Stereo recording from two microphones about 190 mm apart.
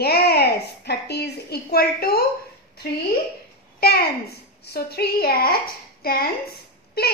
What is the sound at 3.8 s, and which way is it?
A child's voice, 55° left (ahead or behind).